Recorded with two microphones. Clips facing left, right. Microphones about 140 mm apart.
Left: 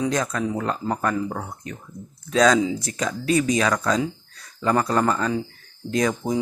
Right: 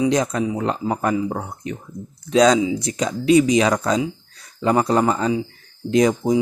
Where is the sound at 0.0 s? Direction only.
20° right (ahead or behind).